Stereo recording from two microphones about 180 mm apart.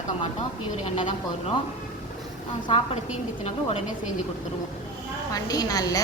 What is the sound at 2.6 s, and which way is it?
Speech, 30° left (ahead or behind).